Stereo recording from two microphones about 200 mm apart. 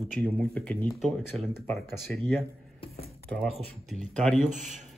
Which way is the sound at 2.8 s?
30° left (ahead or behind).